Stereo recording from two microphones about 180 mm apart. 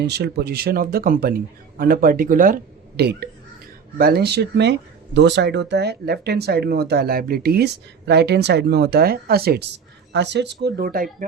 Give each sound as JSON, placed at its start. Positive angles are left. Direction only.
{"t": 0.0, "sound": "speech", "side_deg": -65}
{"t": 3.0, "sound": "speech", "side_deg": -65}